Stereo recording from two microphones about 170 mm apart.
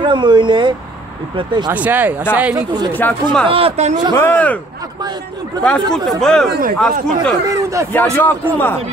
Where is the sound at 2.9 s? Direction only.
5° left (ahead or behind).